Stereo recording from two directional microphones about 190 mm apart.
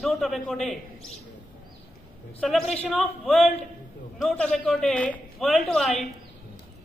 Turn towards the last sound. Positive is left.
turn(degrees=0)  # may be behind; listen again after turning